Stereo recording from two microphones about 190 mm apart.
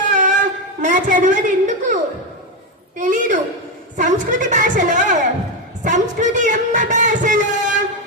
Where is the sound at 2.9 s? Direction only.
45° right (ahead or behind).